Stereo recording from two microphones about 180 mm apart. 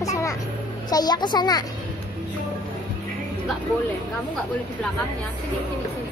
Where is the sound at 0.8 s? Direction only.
20° left (ahead or behind).